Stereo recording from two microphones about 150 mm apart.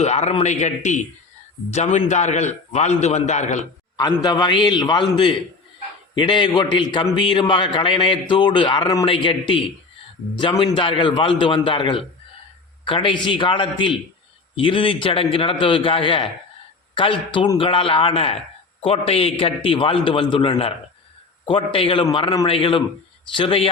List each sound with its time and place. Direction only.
0.0 s a man's voice: 50° left (ahead or behind)
3.9 s a man's voice: 25° left (ahead or behind)
10.7 s a man's voice: 35° left (ahead or behind)